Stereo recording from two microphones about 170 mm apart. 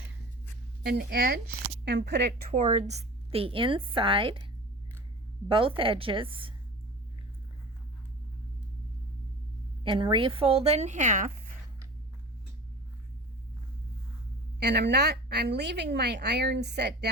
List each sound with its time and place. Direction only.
0.8 s a woman's voice: 70° right (ahead or behind)
1.8 s a woman's voice: 90° right
2.5 s a woman's voice: 45° right (ahead or behind); by 4.4 s 30° right (ahead or behind)
5.5 s a woman's voice: 30° right (ahead or behind)
9.8 s a woman's voice: 30° right (ahead or behind); by 11.3 s 50° right (ahead or behind)
14.6 s a woman's voice: 75° right (ahead or behind)